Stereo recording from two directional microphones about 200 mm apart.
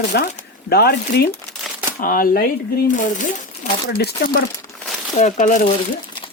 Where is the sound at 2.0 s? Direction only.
45° left (ahead or behind).